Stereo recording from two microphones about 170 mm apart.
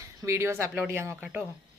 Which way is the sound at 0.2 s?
15° right (ahead or behind).